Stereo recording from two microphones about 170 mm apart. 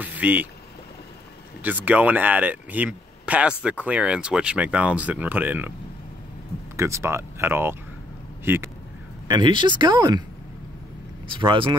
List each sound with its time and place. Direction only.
0.0 s vehicle: 10° right (ahead or behind)
1.6 s speech: 10° right (ahead or behind)
6.8 s speech: 15° right (ahead or behind)
9.3 s speech: 25° right (ahead or behind)
11.3 s speech: 30° right (ahead or behind)